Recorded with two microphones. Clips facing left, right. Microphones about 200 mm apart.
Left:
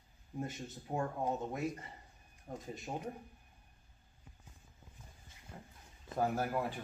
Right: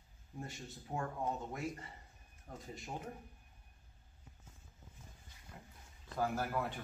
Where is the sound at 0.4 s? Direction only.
20° left (ahead or behind).